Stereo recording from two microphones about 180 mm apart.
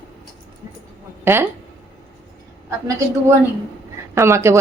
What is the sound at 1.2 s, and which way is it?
Speech, 10° right (ahead or behind).